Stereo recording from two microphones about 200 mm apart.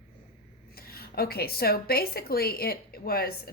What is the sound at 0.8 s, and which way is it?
A woman's voice, 50° left (ahead or behind).